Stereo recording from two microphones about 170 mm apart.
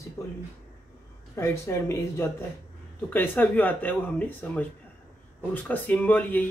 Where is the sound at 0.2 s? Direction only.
15° left (ahead or behind).